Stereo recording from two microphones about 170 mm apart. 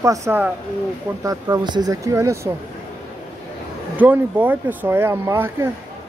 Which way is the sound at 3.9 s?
10° right (ahead or behind).